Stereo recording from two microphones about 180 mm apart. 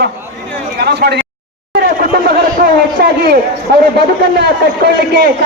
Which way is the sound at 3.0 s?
60° right (ahead or behind).